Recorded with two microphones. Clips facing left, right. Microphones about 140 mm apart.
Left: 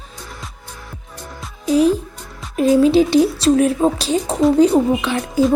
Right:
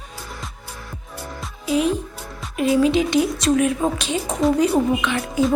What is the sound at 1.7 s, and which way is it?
Speech, 35° left (ahead or behind).